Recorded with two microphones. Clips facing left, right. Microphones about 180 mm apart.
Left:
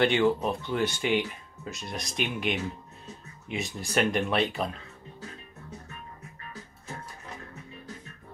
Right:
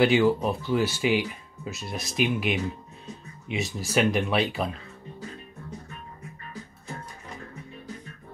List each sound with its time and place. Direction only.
0.0 s speech: 5° right (ahead or behind)